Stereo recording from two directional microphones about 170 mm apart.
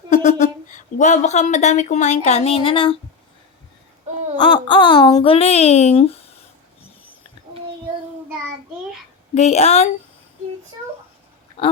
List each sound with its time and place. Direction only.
0.1 s speech: 45° left (ahead or behind)
4.4 s speech: 25° left (ahead or behind)
9.3 s speech: 40° left (ahead or behind)
11.6 s speech: 30° left (ahead or behind)